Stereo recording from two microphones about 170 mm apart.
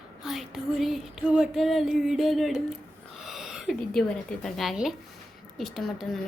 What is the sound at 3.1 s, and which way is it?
A woman's voice, centre (ahead or behind).